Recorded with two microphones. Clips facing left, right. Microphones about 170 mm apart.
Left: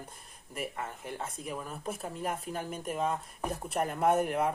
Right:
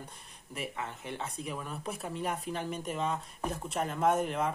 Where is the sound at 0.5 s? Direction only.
50° left (ahead or behind).